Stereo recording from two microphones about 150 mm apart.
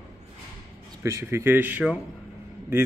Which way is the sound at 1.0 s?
20° right (ahead or behind).